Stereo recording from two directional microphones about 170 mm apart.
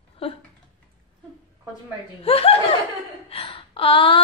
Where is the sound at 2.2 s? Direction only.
35° left (ahead or behind).